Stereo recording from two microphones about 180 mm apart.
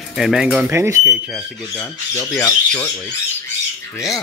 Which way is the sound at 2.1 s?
15° left (ahead or behind).